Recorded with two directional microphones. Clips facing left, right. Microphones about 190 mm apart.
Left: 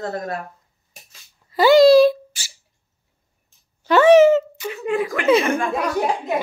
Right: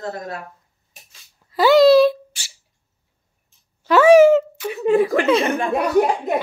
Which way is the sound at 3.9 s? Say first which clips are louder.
Right 1 dB; 5° right (ahead or behind).